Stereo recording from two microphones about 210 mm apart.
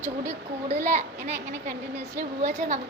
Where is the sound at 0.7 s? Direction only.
35° right (ahead or behind).